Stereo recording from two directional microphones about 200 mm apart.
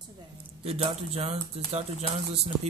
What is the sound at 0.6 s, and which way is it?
Speech, 30° right (ahead or behind).